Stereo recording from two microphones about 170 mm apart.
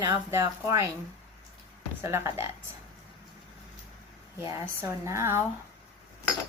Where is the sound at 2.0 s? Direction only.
15° right (ahead or behind).